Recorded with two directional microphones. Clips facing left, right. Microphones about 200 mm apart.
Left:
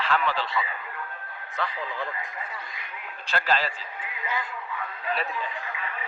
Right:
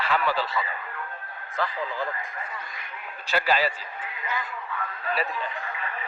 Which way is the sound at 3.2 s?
5° right (ahead or behind).